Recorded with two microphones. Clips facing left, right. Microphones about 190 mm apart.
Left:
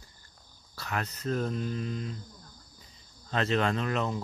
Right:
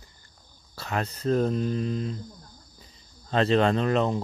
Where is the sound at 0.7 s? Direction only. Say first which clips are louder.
Right 5 dB; 30° right (ahead or behind).